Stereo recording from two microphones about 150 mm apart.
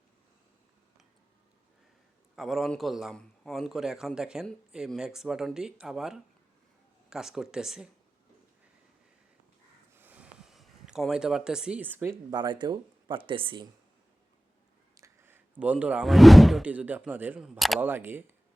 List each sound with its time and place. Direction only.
2.3 s a man's voice: centre (ahead or behind)
9.9 s a sound: 10° right (ahead or behind)
12.3 s speech: 30° right (ahead or behind)
14.9 s speech: 20° right (ahead or behind); by 17.7 s centre (ahead or behind)
17.7 s speech: 15° right (ahead or behind)